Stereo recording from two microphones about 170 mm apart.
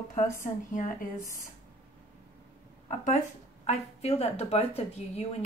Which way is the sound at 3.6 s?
40° left (ahead or behind).